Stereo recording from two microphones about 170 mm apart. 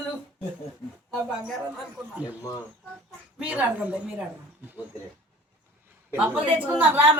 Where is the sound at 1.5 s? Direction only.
Centre (ahead or behind).